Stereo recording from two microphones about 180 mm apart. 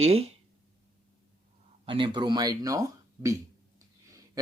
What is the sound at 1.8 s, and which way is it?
Speech, 30° right (ahead or behind).